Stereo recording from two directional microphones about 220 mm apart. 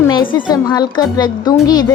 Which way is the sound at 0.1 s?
20° left (ahead or behind).